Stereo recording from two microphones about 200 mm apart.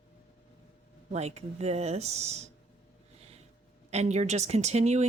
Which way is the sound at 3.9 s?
35° right (ahead or behind).